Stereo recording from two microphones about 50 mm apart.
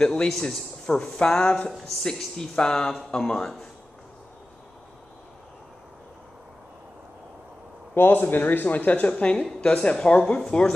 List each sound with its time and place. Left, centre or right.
0.0 s speech: centre
0.3 s speech: centre
1.7 s speech: centre
2.3 s speech: centre
7.9 s speech: left
9.1 s a woman's voice: left